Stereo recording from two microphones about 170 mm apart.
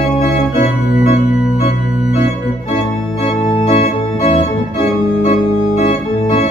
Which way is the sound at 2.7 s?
40° left (ahead or behind).